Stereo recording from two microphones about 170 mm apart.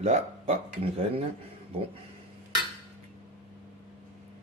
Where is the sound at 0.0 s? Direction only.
35° right (ahead or behind).